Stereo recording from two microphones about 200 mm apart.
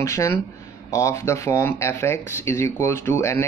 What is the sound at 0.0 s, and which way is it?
Speech, 15° left (ahead or behind).